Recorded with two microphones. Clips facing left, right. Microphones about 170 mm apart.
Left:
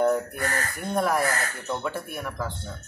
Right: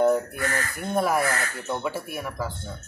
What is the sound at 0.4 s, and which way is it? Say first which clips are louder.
Speech: right 1 dB; 40° left (ahead or behind).